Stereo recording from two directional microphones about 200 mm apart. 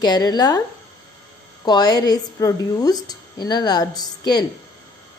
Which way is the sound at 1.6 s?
20° left (ahead or behind).